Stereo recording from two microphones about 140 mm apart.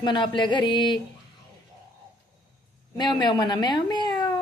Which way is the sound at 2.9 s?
30° left (ahead or behind).